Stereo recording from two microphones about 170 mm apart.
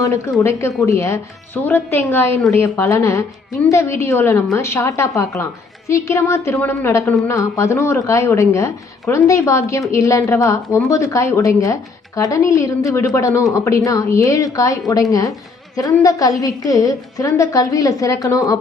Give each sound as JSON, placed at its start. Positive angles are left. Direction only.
{"t": 0.0, "sound": "a woman's voice", "side_deg": 15}